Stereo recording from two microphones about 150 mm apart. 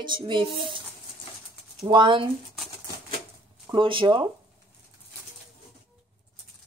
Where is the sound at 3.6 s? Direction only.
35° right (ahead or behind).